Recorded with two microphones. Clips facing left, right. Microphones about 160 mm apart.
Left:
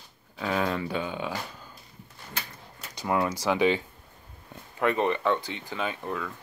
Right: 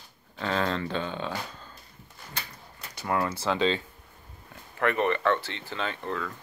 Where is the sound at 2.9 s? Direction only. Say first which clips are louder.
Left 2 dB; 15° left (ahead or behind).